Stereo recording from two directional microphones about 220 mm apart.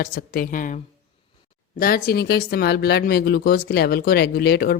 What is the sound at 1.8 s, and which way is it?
Speech, 40° left (ahead or behind).